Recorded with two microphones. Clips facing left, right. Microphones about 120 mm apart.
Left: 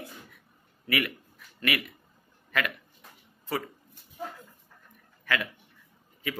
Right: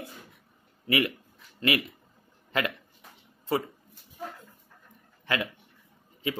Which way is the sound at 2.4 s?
25° right (ahead or behind).